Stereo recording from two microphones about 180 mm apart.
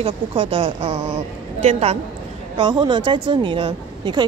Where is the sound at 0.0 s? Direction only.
30° right (ahead or behind).